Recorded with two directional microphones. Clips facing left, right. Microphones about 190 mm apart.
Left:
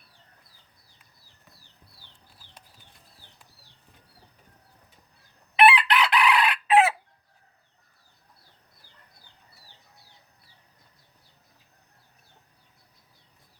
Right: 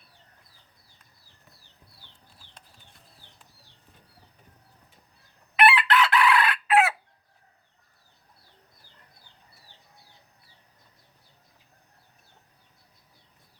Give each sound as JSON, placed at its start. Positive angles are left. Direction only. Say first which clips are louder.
{"t": 5.5, "sound": "chicken", "louder": "left 1 dB", "side_deg": 15}